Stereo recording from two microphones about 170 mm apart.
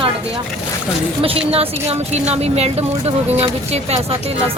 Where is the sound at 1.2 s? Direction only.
35° right (ahead or behind).